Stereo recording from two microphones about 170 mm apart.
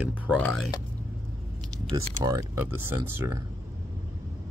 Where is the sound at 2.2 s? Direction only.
15° right (ahead or behind).